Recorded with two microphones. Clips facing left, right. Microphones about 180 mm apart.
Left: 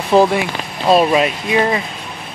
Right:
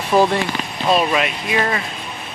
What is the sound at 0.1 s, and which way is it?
Speech, 25° left (ahead or behind).